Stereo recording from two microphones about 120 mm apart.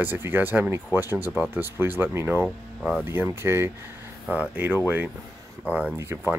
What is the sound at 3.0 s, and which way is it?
Speech, 20° right (ahead or behind).